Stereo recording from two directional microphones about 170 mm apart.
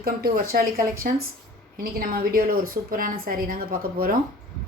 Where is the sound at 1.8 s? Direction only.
60° right (ahead or behind).